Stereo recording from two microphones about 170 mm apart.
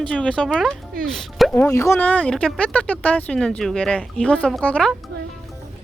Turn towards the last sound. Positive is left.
turn(degrees=5)  # may be behind; listen again after turning